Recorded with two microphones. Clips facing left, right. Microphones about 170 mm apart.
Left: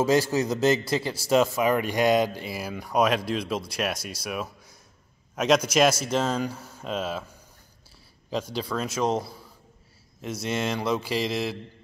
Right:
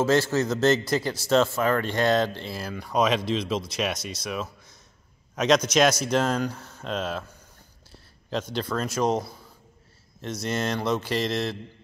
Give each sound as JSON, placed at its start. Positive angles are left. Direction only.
{"t": 0.0, "sound": "a man's voice", "side_deg": 10}
{"t": 8.5, "sound": "speech", "side_deg": 5}
{"t": 10.2, "sound": "speech", "side_deg": 5}